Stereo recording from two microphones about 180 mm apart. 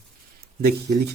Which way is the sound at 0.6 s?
65° right (ahead or behind).